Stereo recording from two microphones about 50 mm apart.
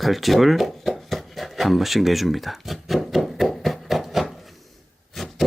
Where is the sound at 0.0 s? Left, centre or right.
Centre.